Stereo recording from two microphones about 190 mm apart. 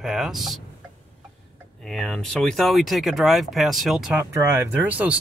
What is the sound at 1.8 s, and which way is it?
Speech, centre (ahead or behind).